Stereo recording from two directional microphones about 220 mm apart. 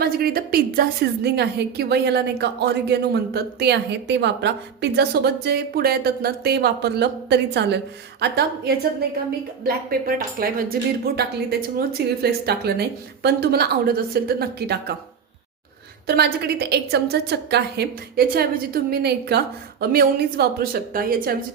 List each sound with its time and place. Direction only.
0.0 s a woman's voice: 45° right (ahead or behind)
16.0 s a woman's voice: 45° right (ahead or behind)